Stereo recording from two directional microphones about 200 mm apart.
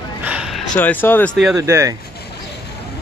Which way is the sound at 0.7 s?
10° left (ahead or behind).